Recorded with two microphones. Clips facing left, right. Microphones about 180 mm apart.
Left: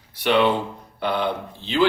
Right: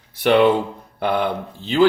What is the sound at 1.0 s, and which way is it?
Speech, 50° right (ahead or behind).